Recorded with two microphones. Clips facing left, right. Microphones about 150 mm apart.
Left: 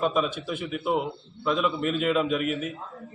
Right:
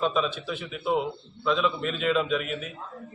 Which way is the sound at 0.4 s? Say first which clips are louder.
Left 3 dB; 50° left (ahead or behind).